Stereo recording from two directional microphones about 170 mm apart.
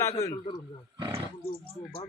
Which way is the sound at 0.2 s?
20° left (ahead or behind).